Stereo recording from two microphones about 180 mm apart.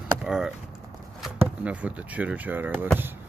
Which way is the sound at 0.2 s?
5° right (ahead or behind).